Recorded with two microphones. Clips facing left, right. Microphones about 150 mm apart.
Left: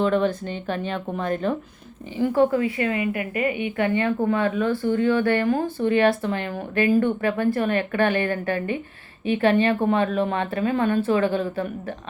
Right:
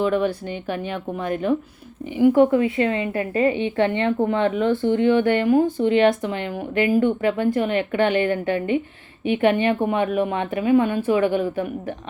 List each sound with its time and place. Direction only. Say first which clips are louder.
0.0 s a woman's voice: even; 10° right (ahead or behind)